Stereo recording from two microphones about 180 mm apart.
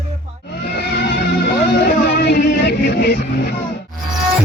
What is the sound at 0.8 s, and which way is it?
Vehicle, 70° left (ahead or behind).